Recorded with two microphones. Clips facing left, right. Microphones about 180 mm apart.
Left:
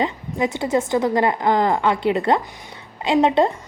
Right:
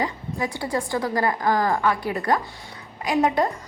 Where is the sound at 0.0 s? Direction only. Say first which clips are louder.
Left 5 dB; 20° left (ahead or behind).